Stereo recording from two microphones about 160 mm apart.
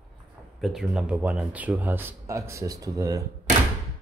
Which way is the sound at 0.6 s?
Centre (ahead or behind).